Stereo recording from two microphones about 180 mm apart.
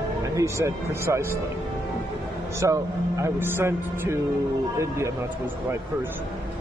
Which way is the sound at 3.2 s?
10° right (ahead or behind).